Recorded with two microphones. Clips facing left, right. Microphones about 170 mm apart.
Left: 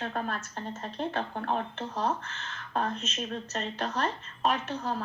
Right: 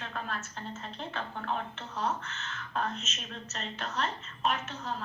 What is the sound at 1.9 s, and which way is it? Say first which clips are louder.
A woman's voice: left 2 dB; 30° left (ahead or behind).